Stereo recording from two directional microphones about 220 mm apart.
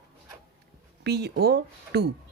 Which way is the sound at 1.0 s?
45° right (ahead or behind).